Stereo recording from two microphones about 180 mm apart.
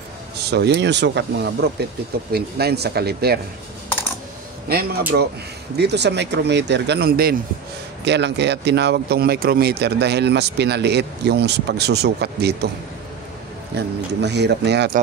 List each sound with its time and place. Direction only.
0.4 s speech: 65° right (ahead or behind)
4.6 s speech: 60° right (ahead or behind)
8.0 s speech: 70° right (ahead or behind)
13.7 s speech: 70° right (ahead or behind)